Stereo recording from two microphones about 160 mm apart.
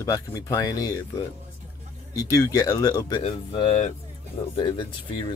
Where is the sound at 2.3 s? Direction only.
20° left (ahead or behind).